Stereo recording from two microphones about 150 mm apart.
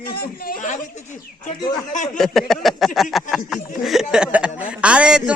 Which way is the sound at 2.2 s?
Centre (ahead or behind).